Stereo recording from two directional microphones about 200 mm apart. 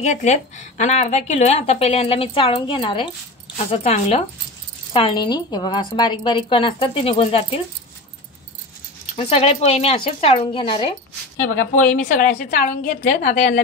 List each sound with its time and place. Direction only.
0.0 s a woman's voice: 35° left (ahead or behind)
9.1 s a woman's voice: 30° left (ahead or behind)
11.6 s a woman's voice: 45° left (ahead or behind)